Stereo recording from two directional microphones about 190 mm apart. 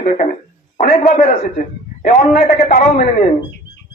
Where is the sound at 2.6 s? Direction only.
45° left (ahead or behind).